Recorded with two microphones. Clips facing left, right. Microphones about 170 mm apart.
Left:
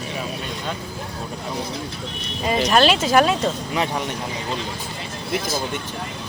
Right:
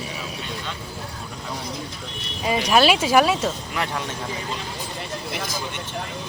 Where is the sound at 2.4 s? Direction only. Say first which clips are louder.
Left 1 dB; 5° right (ahead or behind).